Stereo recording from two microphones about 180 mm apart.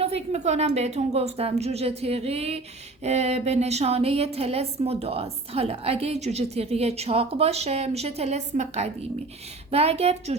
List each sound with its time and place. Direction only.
0.0 s speech: 35° right (ahead or behind)